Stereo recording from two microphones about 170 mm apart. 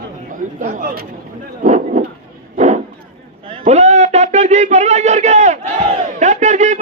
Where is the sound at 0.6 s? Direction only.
55° right (ahead or behind).